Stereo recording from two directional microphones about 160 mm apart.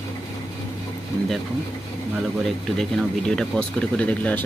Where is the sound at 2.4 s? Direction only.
Centre (ahead or behind).